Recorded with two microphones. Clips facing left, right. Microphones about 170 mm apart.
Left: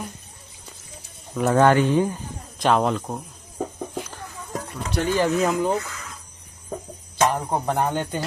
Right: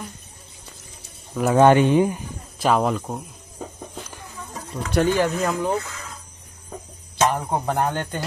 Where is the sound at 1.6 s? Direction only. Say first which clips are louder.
Right 3 dB; 20° right (ahead or behind).